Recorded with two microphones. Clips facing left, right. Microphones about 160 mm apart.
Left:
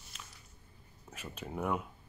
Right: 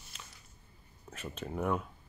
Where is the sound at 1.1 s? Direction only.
5° left (ahead or behind).